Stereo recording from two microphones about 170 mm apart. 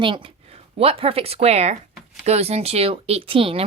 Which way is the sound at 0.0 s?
30° right (ahead or behind).